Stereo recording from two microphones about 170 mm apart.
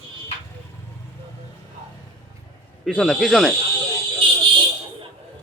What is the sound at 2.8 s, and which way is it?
Speech, centre (ahead or behind).